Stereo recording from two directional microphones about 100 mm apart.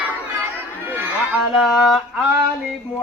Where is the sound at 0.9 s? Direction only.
20° right (ahead or behind).